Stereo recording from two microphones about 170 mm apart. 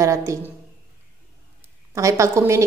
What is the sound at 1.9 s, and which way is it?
Speech, 20° right (ahead or behind).